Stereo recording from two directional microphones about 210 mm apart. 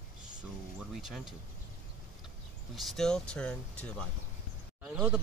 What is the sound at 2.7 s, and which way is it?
Speech, centre (ahead or behind).